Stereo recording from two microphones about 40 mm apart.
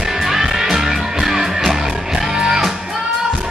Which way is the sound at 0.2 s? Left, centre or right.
Centre.